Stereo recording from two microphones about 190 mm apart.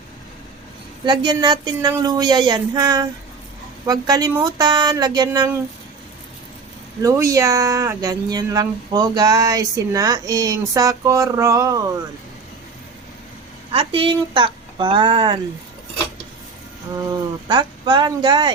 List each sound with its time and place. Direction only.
1.0 s speech: 25° right (ahead or behind)
7.0 s speech: 15° right (ahead or behind)
13.7 s speech: 25° right (ahead or behind)
17.0 s speech: 20° right (ahead or behind)